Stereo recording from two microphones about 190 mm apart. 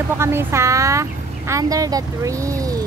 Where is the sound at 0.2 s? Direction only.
15° right (ahead or behind).